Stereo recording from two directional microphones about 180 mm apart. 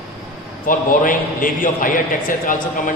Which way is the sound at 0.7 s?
50° left (ahead or behind).